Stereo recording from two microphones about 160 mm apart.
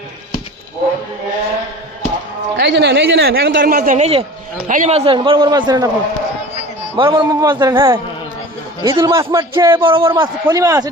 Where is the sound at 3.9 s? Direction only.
40° right (ahead or behind); by 5.9 s 25° right (ahead or behind).